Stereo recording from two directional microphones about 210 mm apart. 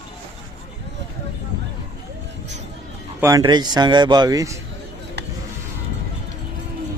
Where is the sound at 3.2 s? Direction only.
15° right (ahead or behind).